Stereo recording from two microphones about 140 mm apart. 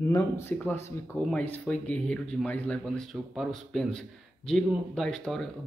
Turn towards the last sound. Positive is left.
turn(degrees=0)  # may be behind; listen again after turning